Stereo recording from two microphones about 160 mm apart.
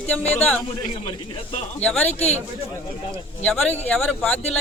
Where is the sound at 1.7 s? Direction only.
10° left (ahead or behind).